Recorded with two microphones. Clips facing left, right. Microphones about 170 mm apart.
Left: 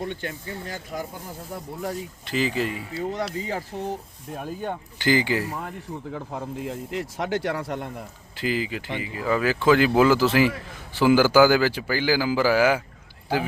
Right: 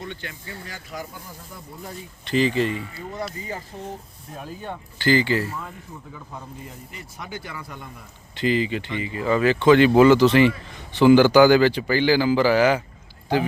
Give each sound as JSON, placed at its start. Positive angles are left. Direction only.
{"t": 0.0, "sound": "speech", "side_deg": 45}
{"t": 2.2, "sound": "a man's voice", "side_deg": 5}
{"t": 2.9, "sound": "speech", "side_deg": 85}
{"t": 4.9, "sound": "speech", "side_deg": 15}
{"t": 5.6, "sound": "speech", "side_deg": 75}
{"t": 8.4, "sound": "a man's voice", "side_deg": 5}